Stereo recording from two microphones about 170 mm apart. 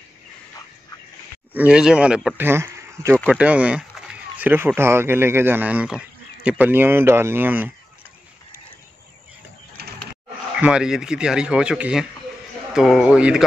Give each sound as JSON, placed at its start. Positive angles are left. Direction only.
{"t": 1.5, "sound": "speech", "side_deg": -10}
{"t": 9.8, "sound": "a sound", "side_deg": -70}
{"t": 10.5, "sound": "speech", "side_deg": -5}